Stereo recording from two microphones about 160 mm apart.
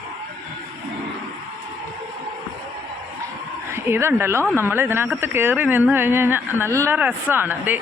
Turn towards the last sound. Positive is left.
turn(degrees=-10)  # may be behind; listen again after turning